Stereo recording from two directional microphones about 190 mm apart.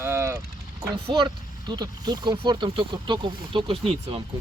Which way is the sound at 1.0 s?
25° right (ahead or behind).